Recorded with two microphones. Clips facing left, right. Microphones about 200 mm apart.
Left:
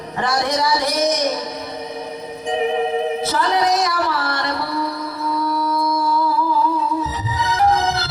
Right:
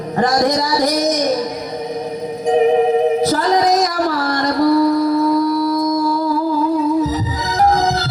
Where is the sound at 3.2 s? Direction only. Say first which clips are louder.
Right 4 dB; 40° right (ahead or behind).